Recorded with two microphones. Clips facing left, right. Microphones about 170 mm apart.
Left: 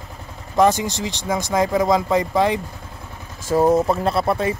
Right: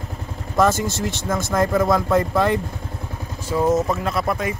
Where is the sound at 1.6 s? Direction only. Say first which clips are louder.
Right 1 dB; centre (ahead or behind).